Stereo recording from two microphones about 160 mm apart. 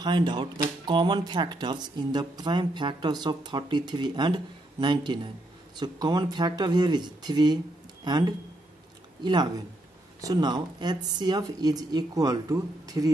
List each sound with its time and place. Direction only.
0.0 s speech: 30° right (ahead or behind)